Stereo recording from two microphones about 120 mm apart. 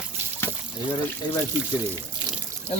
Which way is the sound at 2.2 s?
40° right (ahead or behind).